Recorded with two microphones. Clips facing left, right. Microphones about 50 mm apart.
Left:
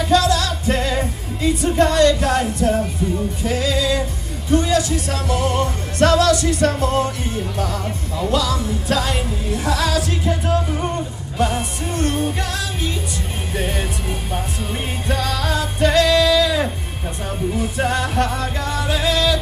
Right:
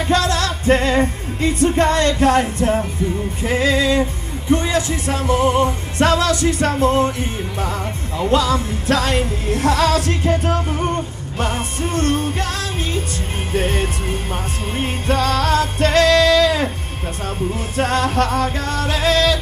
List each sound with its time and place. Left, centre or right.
0.0 s music: right
8.9 s music: right
15.0 s music: right
17.7 s music: right